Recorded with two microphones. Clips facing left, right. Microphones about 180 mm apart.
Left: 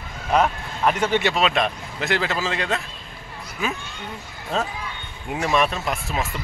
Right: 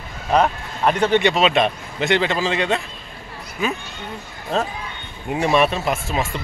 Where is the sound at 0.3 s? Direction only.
30° right (ahead or behind).